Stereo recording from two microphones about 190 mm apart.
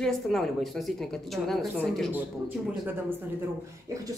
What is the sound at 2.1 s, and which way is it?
Speech, 10° right (ahead or behind).